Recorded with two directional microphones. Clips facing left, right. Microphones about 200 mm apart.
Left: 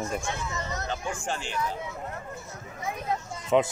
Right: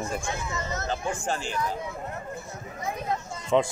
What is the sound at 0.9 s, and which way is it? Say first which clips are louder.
Speech: right 4 dB; 40° right (ahead or behind).